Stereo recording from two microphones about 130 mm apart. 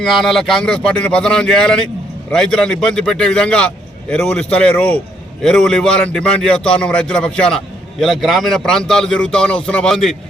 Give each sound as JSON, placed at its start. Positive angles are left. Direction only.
{"t": 0.0, "sound": "a man's voice", "side_deg": 0}